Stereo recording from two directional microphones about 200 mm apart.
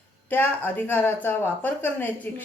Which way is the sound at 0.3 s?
10° left (ahead or behind).